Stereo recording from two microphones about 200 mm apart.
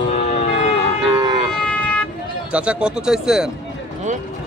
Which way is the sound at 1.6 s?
5° left (ahead or behind).